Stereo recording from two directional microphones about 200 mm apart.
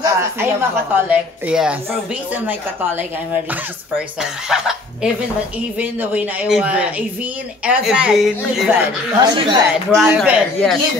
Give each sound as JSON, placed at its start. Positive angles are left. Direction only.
{"t": 0.0, "sound": "a woman's voice", "side_deg": -15}
{"t": 4.2, "sound": "a woman's voice", "side_deg": 0}
{"t": 9.2, "sound": "speech", "side_deg": -20}
{"t": 9.8, "sound": "a woman's voice", "side_deg": 0}